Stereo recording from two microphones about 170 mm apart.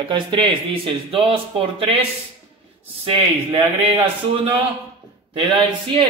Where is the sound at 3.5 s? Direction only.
35° right (ahead or behind).